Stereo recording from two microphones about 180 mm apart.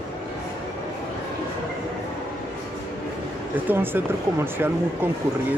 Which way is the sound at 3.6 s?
10° right (ahead or behind).